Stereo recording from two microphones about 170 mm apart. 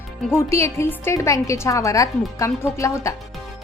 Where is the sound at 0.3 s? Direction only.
15° left (ahead or behind).